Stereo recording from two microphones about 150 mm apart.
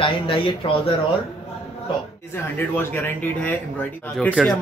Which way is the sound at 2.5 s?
10° left (ahead or behind).